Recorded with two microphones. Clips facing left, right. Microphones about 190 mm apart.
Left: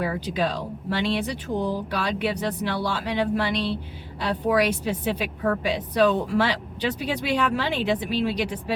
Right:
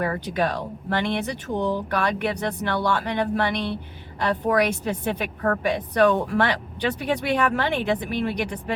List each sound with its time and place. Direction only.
0.0 s speech: 60° right (ahead or behind)